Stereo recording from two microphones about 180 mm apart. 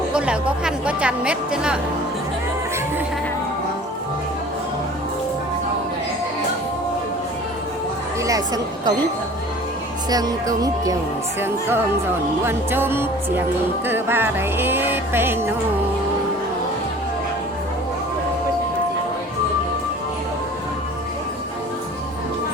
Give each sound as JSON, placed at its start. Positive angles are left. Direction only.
{"t": 0.1, "sound": "music", "side_deg": -5}
{"t": 8.2, "sound": "a sound", "side_deg": -20}
{"t": 10.1, "sound": "speech", "side_deg": -20}
{"t": 11.3, "sound": "music", "side_deg": -10}